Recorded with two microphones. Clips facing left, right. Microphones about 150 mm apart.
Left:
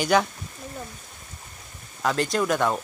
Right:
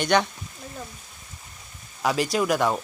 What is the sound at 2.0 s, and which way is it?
Speech, 5° right (ahead or behind).